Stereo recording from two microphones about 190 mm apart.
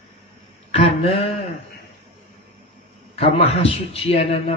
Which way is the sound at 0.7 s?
30° left (ahead or behind).